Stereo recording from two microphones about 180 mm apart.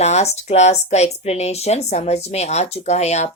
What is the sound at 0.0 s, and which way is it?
Speech, 35° left (ahead or behind).